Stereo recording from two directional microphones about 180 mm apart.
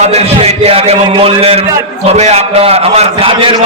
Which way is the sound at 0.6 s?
35° right (ahead or behind).